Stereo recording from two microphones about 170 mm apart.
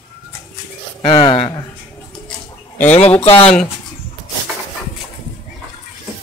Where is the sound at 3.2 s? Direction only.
35° left (ahead or behind).